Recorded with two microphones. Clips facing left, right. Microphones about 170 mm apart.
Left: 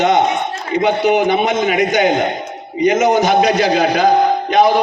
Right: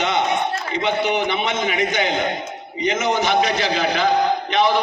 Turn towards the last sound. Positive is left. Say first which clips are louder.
# left 6 dB
turn(degrees=40)  # may be behind; listen again after turning